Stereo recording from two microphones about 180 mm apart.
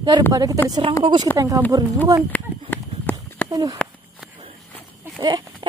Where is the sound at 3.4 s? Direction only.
20° right (ahead or behind).